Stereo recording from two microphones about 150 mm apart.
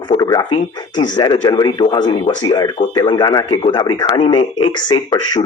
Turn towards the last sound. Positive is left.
turn(degrees=30)  # may be behind; listen again after turning